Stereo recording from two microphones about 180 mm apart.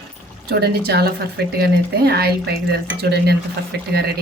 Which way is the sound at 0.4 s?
65° right (ahead or behind).